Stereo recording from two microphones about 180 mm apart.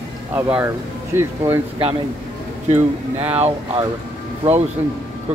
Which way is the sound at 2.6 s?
35° right (ahead or behind).